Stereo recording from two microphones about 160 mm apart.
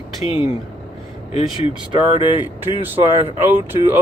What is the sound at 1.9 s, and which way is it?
Speech, 30° right (ahead or behind).